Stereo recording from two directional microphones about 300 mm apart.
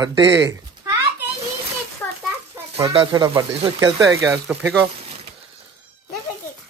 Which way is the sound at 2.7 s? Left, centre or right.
Centre.